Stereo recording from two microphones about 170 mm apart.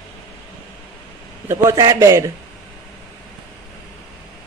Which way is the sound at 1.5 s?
20° right (ahead or behind).